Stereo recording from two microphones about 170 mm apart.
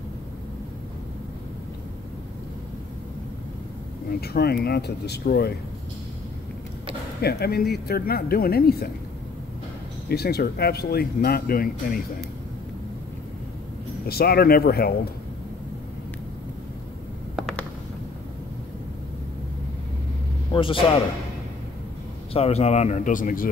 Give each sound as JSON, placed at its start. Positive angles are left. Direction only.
{"t": 4.2, "sound": "speech", "side_deg": 70}
{"t": 7.2, "sound": "speech", "side_deg": 70}
{"t": 10.0, "sound": "speech", "side_deg": 70}
{"t": 14.0, "sound": "speech", "side_deg": 65}
{"t": 20.5, "sound": "a man's voice", "side_deg": 30}
{"t": 22.3, "sound": "speech", "side_deg": 40}